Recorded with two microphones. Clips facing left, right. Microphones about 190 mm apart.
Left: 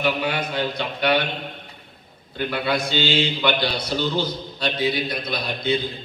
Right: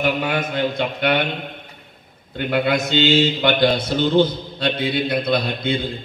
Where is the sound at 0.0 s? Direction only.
45° right (ahead or behind).